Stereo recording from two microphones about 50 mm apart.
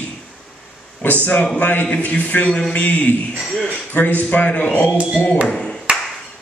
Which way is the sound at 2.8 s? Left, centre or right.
Left.